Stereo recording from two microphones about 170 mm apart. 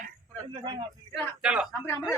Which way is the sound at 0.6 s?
25° right (ahead or behind).